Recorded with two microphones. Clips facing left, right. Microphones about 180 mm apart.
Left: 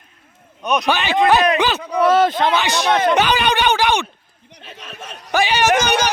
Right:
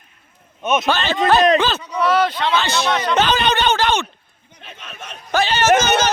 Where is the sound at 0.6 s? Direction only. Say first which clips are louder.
Right 1 dB; 5° right (ahead or behind).